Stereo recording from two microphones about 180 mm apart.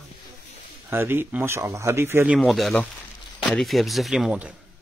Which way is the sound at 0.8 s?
10° right (ahead or behind).